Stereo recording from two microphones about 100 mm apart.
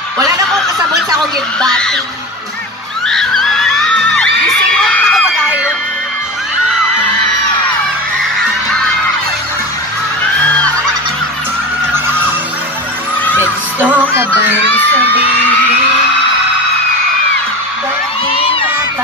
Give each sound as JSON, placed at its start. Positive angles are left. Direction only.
{"t": 1.6, "sound": "music", "side_deg": 5}
{"t": 3.1, "sound": "neigh", "side_deg": 5}
{"t": 4.2, "sound": "children shouting", "side_deg": 10}
{"t": 11.9, "sound": "music", "side_deg": -20}
{"t": 13.2, "sound": "music", "side_deg": 15}
{"t": 13.7, "sound": "music", "side_deg": -15}
{"t": 18.3, "sound": "a sound", "side_deg": 65}